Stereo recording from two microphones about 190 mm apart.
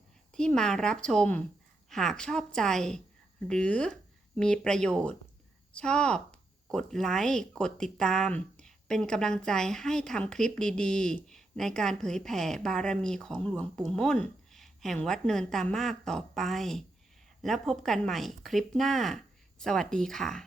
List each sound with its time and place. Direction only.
0.3 s speech: 5° left (ahead or behind)